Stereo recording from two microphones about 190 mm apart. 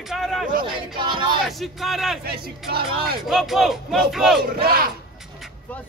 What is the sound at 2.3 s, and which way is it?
Speech, 55° right (ahead or behind).